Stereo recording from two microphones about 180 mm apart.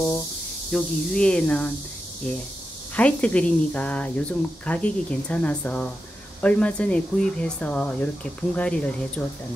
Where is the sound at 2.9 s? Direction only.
5° left (ahead or behind).